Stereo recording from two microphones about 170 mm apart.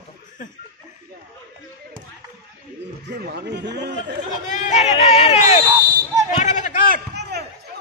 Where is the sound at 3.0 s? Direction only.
75° right (ahead or behind); by 4.1 s 90° right.